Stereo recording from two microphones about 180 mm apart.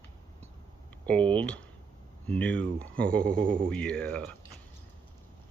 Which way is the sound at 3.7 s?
5° left (ahead or behind).